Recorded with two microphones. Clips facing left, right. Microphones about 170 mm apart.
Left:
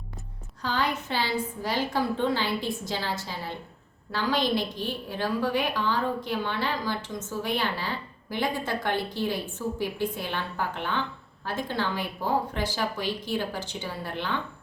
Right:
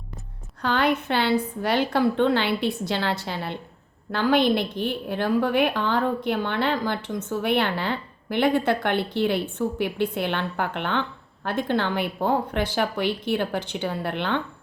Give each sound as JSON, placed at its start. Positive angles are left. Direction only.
{"t": 0.6, "sound": "a woman's voice", "side_deg": -65}